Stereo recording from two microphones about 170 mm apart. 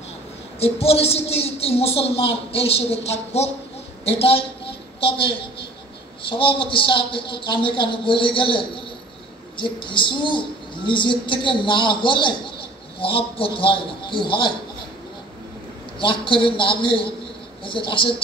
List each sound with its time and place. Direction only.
0.6 s a woman's voice: 35° left (ahead or behind)
4.0 s a sound: 35° left (ahead or behind)
6.2 s a woman's voice: 30° left (ahead or behind)
16.0 s a woman's voice: 30° left (ahead or behind)